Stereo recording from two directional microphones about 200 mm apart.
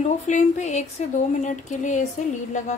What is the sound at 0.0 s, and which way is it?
Speech, 35° left (ahead or behind).